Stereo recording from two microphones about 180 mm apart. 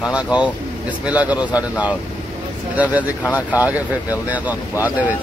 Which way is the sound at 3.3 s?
10° right (ahead or behind).